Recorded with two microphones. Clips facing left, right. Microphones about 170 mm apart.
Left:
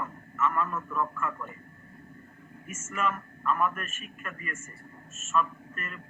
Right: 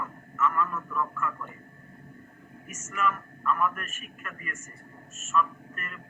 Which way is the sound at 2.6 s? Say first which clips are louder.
Right 1 dB; 25° left (ahead or behind).